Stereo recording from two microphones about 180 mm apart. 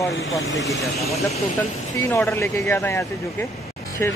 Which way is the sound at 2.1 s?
15° left (ahead or behind).